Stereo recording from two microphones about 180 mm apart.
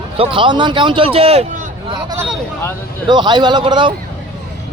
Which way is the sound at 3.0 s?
25° right (ahead or behind).